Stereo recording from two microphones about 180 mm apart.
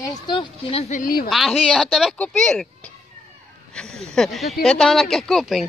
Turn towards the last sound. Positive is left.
turn(degrees=0)  # may be behind; listen again after turning